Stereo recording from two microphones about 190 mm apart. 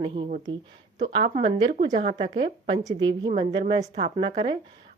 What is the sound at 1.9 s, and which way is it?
A woman's voice, 40° right (ahead or behind).